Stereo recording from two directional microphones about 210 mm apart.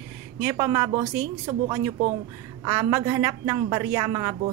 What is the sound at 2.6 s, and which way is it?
Speech, 15° right (ahead or behind).